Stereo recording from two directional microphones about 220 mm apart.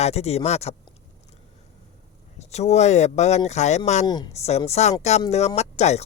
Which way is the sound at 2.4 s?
30° left (ahead or behind).